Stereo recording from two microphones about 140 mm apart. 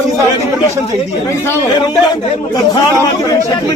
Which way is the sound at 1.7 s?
30° left (ahead or behind).